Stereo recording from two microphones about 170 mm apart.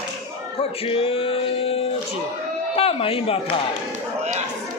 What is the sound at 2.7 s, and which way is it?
Speech, 35° left (ahead or behind).